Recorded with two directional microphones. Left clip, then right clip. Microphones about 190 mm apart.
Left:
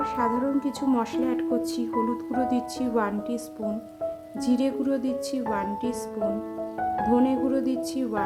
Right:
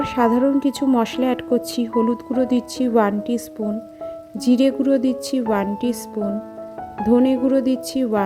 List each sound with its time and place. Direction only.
0.0 s a woman's voice: 35° right (ahead or behind)
7.0 s speech: 25° right (ahead or behind)